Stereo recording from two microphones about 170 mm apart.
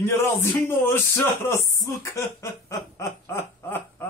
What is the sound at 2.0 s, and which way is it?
Snicker, 20° left (ahead or behind).